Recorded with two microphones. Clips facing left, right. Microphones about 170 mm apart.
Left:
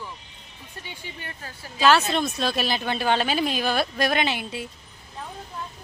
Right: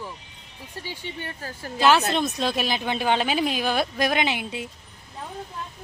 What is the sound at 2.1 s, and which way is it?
A woman's voice, 20° right (ahead or behind).